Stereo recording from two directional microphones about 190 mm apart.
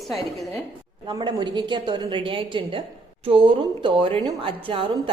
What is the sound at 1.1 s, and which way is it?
A woman's voice, 25° right (ahead or behind).